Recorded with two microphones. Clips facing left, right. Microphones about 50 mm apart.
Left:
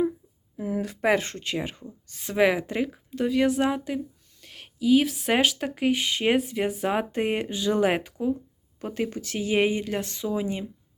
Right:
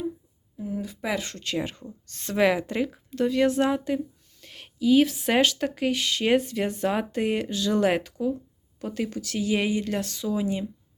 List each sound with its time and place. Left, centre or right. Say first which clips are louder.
0.5 s a sound: left 3 dB; left
1.0 s speech: left 7 dB; left
1.5 s speech: right 4 dB; centre
6.3 s speech: right 2 dB; centre
6.8 s speech: right 1 dB; centre